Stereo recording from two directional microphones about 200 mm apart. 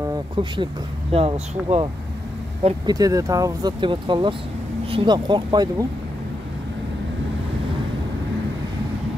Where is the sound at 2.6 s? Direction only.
20° right (ahead or behind).